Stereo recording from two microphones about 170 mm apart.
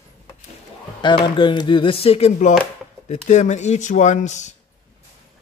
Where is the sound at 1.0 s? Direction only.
30° left (ahead or behind); by 4.6 s 45° left (ahead or behind).